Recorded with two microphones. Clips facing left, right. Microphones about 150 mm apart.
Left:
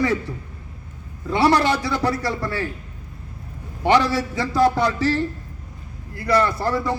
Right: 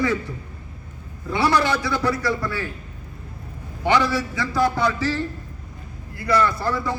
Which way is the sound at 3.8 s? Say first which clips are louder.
Left 2 dB; 30° left (ahead or behind).